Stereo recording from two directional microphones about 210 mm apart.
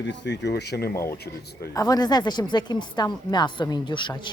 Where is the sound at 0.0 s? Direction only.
55° left (ahead or behind).